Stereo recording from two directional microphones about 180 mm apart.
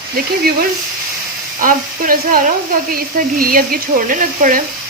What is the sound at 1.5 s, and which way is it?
Speech, 50° right (ahead or behind).